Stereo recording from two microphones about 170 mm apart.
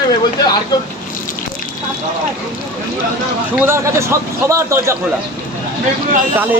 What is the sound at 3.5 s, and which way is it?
Speech, 15° right (ahead or behind).